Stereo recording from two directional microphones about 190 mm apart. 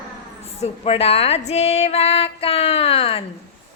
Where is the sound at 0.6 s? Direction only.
30° left (ahead or behind).